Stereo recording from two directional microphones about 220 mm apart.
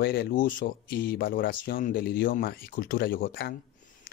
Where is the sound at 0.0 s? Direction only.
45° left (ahead or behind).